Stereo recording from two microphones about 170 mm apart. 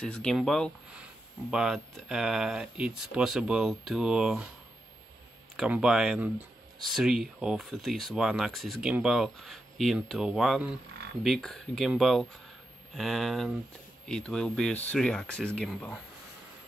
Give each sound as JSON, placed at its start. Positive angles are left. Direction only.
{"t": 0.0, "sound": "speech", "side_deg": 5}
{"t": 5.6, "sound": "speech", "side_deg": -5}